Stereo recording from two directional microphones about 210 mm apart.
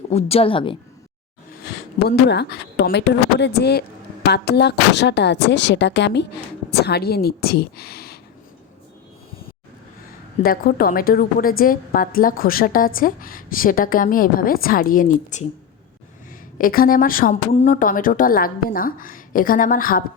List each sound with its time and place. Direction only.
0.1 s speech: 30° left (ahead or behind)
1.6 s a woman's voice: 50° left (ahead or behind)
10.4 s a woman's voice: 45° left (ahead or behind)
16.6 s a woman's voice: 45° left (ahead or behind)